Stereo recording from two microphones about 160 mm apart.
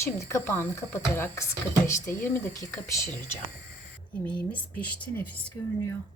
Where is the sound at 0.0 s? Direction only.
15° left (ahead or behind).